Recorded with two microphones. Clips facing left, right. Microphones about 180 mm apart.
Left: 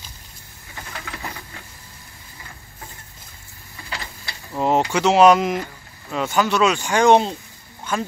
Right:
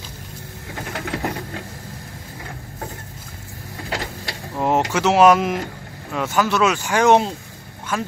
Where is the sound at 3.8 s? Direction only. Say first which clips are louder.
Right 7 dB; 75° right (ahead or behind).